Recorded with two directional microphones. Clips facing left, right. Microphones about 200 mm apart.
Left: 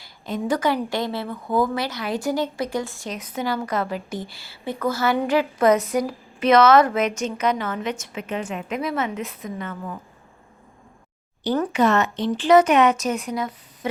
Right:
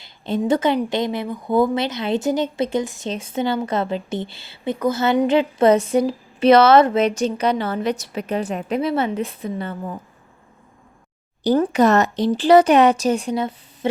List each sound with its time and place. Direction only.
0.0 s a woman's voice: 25° right (ahead or behind)
11.4 s speech: 35° right (ahead or behind)